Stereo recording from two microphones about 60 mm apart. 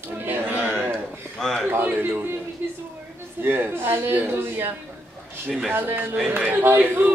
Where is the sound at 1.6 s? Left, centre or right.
Right.